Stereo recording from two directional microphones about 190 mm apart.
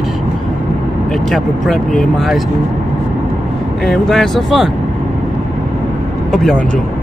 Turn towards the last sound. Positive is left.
turn(degrees=0)  # may be behind; listen again after turning